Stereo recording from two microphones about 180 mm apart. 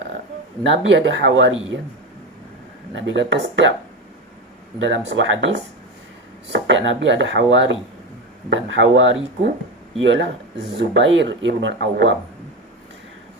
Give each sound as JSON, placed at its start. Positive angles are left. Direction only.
{"t": 0.7, "sound": "speech", "side_deg": -90}
{"t": 2.9, "sound": "speech", "side_deg": -90}
{"t": 4.8, "sound": "speech", "side_deg": -90}